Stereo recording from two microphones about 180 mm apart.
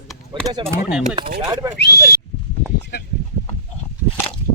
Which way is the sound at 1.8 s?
65° left (ahead or behind).